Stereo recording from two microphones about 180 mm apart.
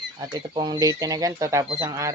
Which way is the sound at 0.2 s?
20° right (ahead or behind).